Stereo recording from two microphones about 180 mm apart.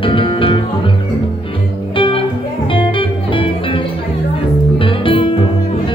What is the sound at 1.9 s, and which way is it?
Music, 30° left (ahead or behind).